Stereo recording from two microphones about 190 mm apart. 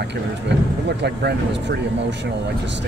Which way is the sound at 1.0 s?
60° right (ahead or behind).